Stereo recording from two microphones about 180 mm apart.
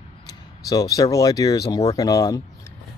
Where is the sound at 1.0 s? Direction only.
20° left (ahead or behind).